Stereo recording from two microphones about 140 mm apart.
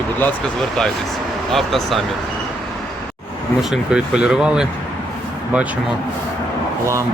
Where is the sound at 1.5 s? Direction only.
Centre (ahead or behind).